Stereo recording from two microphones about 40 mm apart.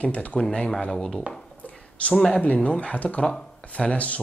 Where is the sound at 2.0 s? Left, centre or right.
Left.